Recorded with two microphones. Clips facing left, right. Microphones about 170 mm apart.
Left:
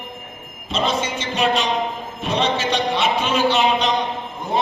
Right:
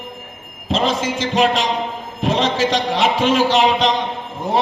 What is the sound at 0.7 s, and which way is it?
A man's voice, 90° right.